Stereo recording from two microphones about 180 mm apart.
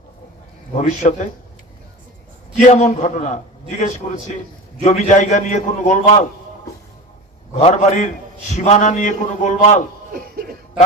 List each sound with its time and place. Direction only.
0.8 s a man's voice: 40° left (ahead or behind)
2.6 s a man's voice: 40° left (ahead or behind)
7.5 s a man's voice: 35° left (ahead or behind)
10.2 s a sound: 55° right (ahead or behind)